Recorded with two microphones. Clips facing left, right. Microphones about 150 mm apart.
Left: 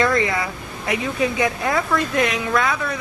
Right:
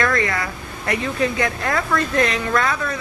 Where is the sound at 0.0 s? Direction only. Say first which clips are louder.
Left 2 dB; 20° left (ahead or behind).